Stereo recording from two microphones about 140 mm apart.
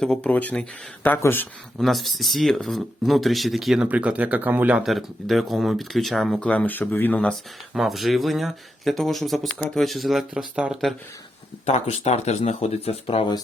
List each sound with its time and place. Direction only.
0.0 s speech: 5° left (ahead or behind)
1.8 s speech: centre (ahead or behind)
4.8 s speech: centre (ahead or behind)
7.7 s speech: centre (ahead or behind)
11.6 s speech: 50° left (ahead or behind)